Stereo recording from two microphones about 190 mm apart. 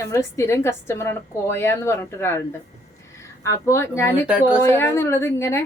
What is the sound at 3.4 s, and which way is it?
A woman's voice, 15° left (ahead or behind).